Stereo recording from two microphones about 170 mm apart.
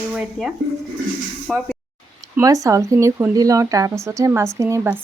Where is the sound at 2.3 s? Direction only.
20° right (ahead or behind).